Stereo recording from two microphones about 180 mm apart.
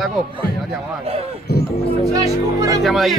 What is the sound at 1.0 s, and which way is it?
Speech, 35° right (ahead or behind).